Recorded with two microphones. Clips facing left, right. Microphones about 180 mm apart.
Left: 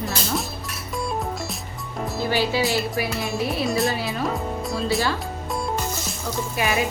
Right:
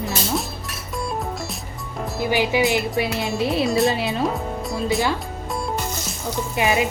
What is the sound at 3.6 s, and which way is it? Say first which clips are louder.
Speech: right 4 dB; centre (ahead or behind).